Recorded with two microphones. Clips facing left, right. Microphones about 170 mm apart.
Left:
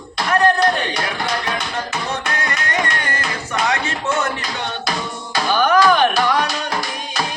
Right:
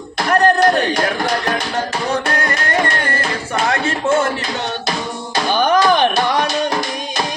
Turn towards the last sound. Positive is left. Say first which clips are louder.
# right 1 dB
turn(degrees=-25)  # may be behind; listen again after turning